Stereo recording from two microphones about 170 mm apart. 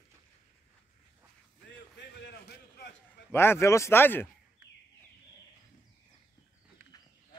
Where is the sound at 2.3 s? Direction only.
70° left (ahead or behind).